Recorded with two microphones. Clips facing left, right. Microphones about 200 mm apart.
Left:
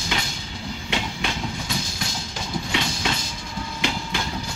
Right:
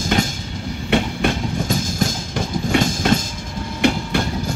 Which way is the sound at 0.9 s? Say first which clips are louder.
Right 10 dB; 50° right (ahead or behind).